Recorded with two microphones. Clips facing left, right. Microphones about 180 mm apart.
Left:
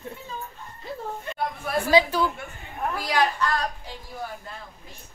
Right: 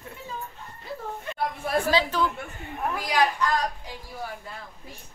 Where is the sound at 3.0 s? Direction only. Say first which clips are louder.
Even; 15° right (ahead or behind).